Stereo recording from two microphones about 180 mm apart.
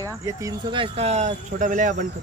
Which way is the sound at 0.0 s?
20° right (ahead or behind).